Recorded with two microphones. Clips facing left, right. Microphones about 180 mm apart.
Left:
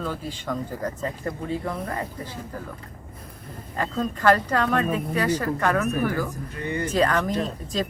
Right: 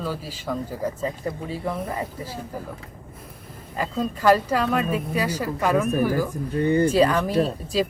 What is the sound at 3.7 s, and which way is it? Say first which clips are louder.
Speech: right 1 dB; 10° right (ahead or behind).